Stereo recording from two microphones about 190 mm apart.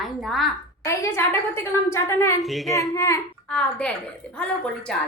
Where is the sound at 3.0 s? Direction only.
15° left (ahead or behind).